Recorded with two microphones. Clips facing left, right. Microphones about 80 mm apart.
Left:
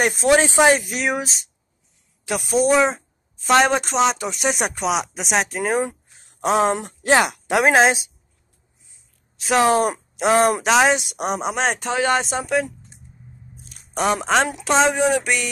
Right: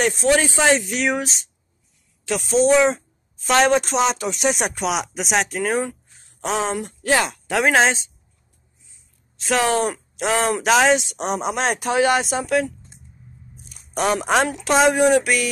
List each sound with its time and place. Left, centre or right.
0.0 s speech: centre
0.7 s a woman's voice: centre
6.5 s speech: left
7.5 s speech: centre
9.8 s speech: centre
10.6 s a woman's voice: centre
13.9 s a woman's voice: centre
15.2 s a woman's voice: centre